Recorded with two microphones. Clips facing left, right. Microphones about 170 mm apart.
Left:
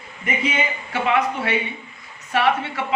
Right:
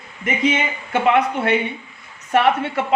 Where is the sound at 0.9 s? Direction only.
55° right (ahead or behind).